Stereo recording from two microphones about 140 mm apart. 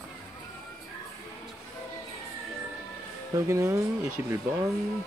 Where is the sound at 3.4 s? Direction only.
20° right (ahead or behind).